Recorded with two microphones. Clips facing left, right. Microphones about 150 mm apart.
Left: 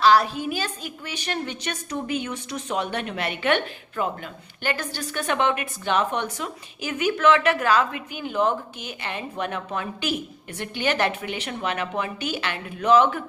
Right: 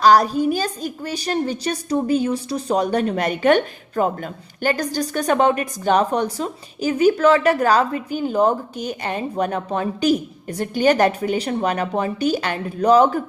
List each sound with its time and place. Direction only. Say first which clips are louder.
0.0 s a woman's voice: right 4 dB; 40° right (ahead or behind)